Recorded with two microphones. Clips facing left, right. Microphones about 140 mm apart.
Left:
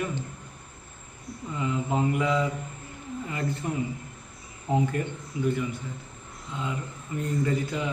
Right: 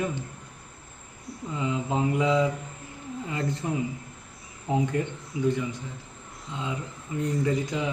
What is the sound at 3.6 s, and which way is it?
Mantra, 20° right (ahead or behind).